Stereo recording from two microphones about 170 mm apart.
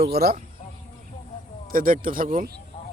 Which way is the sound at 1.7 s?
55° right (ahead or behind).